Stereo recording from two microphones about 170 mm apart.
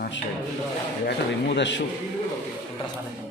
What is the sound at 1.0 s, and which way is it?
Speech, 90° left.